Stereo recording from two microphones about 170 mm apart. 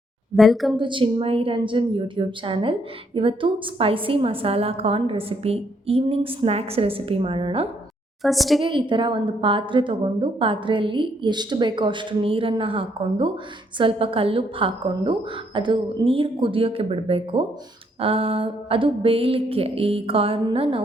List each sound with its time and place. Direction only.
0.3 s speech: centre (ahead or behind)
0.8 s a woman's voice: 30° right (ahead or behind)
8.2 s speech: centre (ahead or behind)
8.6 s a woman's voice: 30° right (ahead or behind)